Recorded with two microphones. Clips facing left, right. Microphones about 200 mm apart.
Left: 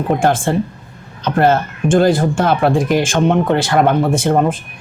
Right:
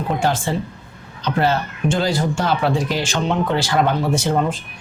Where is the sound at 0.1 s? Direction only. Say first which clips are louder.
Left 6 dB; 50° left (ahead or behind).